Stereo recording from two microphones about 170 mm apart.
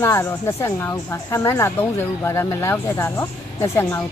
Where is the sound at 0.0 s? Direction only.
15° left (ahead or behind).